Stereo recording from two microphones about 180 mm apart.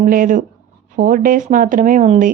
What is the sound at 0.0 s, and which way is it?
Speech, 50° right (ahead or behind).